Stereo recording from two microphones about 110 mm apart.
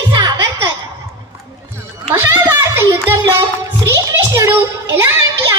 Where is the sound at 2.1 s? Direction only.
20° right (ahead or behind).